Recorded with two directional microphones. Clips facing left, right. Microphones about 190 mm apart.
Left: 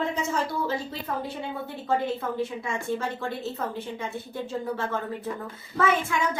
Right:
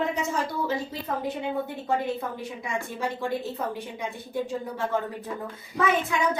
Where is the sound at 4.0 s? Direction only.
15° right (ahead or behind).